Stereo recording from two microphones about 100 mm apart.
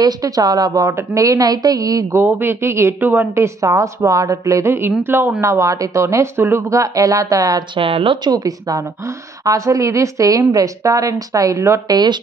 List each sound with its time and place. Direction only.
0.0 s a woman's voice: 40° right (ahead or behind)
2.2 s a woman's voice: 20° right (ahead or behind); by 7.6 s 40° right (ahead or behind)
7.7 s speech: 65° right (ahead or behind)
8.2 s a woman's voice: 40° right (ahead or behind)